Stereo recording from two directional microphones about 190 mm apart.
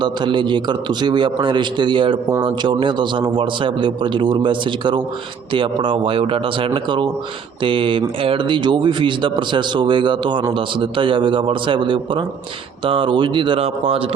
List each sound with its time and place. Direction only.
0.0 s speech: 25° right (ahead or behind)